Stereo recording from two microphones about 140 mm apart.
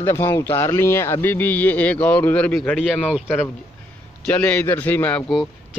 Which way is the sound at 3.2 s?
15° left (ahead or behind).